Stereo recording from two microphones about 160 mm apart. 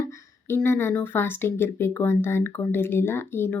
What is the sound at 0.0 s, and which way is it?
A woman's voice, 15° left (ahead or behind).